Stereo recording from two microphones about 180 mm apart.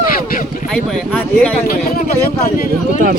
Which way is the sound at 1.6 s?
55° left (ahead or behind).